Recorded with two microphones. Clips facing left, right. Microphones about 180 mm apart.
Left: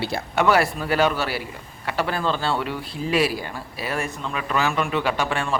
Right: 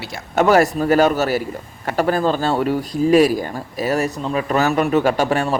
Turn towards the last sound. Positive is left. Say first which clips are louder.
# right 7 dB
turn(degrees=-40)  # may be behind; listen again after turning